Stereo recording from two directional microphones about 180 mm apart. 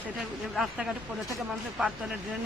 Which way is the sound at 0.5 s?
Centre (ahead or behind).